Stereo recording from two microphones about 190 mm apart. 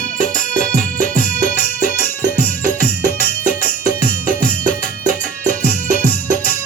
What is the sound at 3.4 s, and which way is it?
Music, 45° right (ahead or behind).